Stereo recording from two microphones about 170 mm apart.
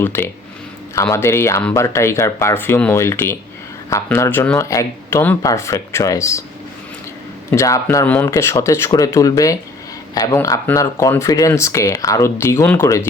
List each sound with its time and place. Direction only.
0.0 s speech: 15° left (ahead or behind)
7.5 s speech: 15° left (ahead or behind)